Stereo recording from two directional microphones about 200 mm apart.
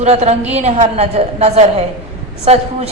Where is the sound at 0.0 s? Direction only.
30° right (ahead or behind).